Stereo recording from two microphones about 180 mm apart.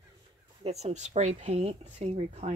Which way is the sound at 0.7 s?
35° right (ahead or behind).